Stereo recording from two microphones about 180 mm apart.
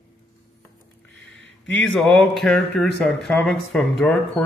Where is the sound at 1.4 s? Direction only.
90° left.